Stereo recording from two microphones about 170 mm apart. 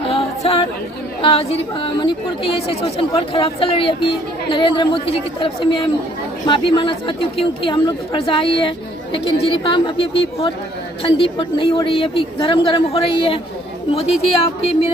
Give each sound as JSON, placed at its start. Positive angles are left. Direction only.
{"t": 0.1, "sound": "chatter", "side_deg": 35}
{"t": 1.2, "sound": "speech", "side_deg": 35}